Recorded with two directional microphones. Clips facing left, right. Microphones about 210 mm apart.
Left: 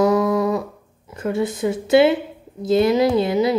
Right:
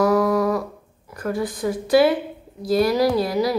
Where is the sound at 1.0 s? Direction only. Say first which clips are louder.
Left 3 dB; 25° left (ahead or behind).